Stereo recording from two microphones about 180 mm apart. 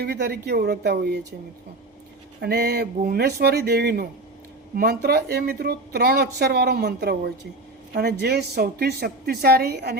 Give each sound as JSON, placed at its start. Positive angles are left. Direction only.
{"t": 0.0, "sound": "a woman's voice", "side_deg": -60}
{"t": 2.4, "sound": "a woman's voice", "side_deg": -65}